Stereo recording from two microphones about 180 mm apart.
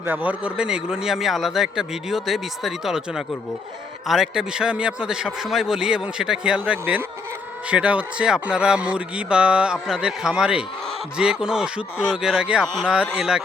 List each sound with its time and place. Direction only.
0.0 s a man's voice: 10° right (ahead or behind)